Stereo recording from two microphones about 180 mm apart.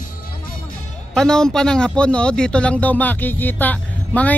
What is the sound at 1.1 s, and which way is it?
A man's voice, 5° left (ahead or behind).